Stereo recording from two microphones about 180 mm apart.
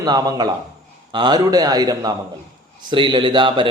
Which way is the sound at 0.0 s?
20° right (ahead or behind).